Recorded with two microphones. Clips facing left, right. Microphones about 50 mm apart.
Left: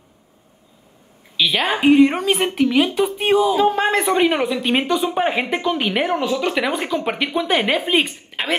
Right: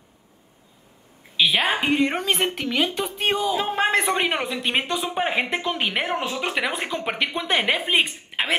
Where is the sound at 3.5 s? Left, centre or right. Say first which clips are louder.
Left 5 dB; centre.